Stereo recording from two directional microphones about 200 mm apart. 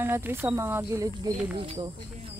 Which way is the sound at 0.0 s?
10° right (ahead or behind).